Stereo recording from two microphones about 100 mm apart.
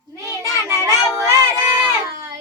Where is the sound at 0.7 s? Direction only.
30° right (ahead or behind).